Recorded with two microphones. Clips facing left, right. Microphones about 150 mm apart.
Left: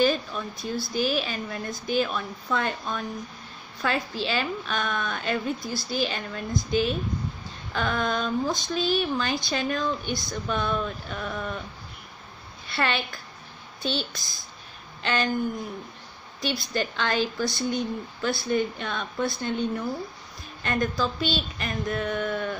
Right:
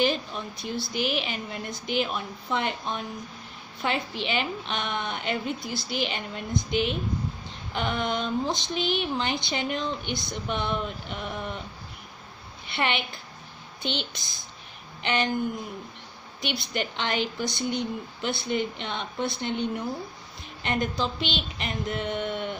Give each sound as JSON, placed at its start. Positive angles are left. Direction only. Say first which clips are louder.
{"t": 0.0, "sound": "a sound", "louder": "left 2 dB", "side_deg": -20}
{"t": 0.9, "sound": "speech", "louder": "left 3 dB", "side_deg": -20}
{"t": 12.6, "sound": "a woman's voice", "louder": "left 1 dB", "side_deg": -20}
{"t": 16.3, "sound": "speech", "louder": "left 2 dB", "side_deg": -20}